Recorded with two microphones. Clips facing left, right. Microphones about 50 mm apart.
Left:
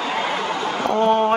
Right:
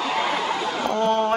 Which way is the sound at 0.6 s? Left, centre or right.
Left.